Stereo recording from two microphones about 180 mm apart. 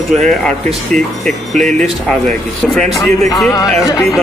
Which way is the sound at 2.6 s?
Centre (ahead or behind).